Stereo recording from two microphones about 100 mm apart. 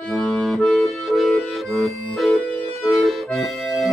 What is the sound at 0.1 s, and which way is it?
Accordion, centre (ahead or behind).